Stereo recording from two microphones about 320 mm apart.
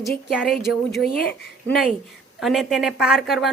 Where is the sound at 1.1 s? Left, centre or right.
Left.